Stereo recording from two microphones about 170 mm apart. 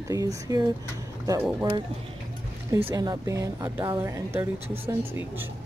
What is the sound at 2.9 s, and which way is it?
Speech, 20° right (ahead or behind).